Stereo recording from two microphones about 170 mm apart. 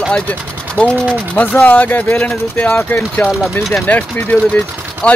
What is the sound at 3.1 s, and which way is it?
Speech, 5° left (ahead or behind).